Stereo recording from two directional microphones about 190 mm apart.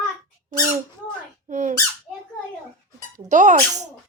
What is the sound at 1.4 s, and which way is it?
Squeak, 40° right (ahead or behind).